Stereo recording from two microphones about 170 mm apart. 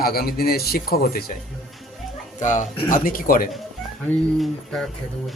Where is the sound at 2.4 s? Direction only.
45° left (ahead or behind).